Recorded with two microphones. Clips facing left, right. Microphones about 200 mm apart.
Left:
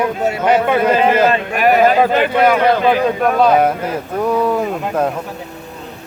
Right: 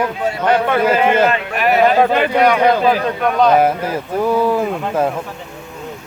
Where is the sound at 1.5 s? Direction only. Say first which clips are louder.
Left 3 dB; 45° left (ahead or behind).